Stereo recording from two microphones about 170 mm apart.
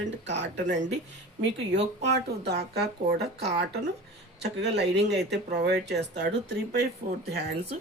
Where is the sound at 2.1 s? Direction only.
75° right (ahead or behind).